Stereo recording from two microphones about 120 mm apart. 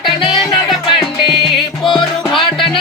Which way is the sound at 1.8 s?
Centre (ahead or behind).